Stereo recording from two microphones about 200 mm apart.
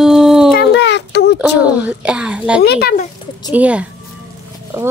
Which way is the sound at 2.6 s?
50° left (ahead or behind).